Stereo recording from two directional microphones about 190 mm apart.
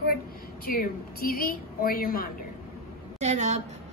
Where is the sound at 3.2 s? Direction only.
35° right (ahead or behind).